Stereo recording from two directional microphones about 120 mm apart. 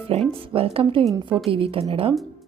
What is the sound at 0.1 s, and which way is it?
A woman's voice, 55° right (ahead or behind).